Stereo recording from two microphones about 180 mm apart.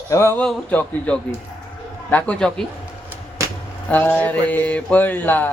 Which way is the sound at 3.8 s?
10° left (ahead or behind).